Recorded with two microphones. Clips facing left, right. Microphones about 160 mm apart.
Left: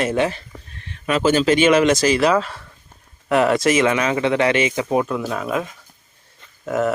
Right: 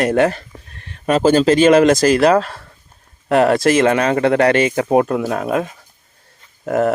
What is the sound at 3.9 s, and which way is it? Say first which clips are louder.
Speech: right 4 dB; 50° right (ahead or behind).